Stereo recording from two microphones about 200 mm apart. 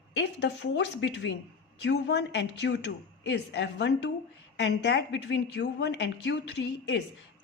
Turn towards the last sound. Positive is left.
turn(degrees=60)  # may be behind; listen again after turning